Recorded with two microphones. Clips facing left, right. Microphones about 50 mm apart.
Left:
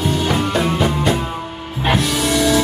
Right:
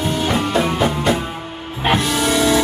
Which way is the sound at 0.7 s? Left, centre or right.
Right.